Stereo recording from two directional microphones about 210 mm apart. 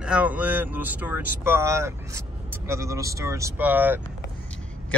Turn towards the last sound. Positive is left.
turn(degrees=-10)  # may be behind; listen again after turning